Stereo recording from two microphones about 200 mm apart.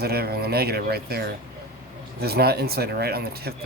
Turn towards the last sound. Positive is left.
turn(degrees=-50)  # may be behind; listen again after turning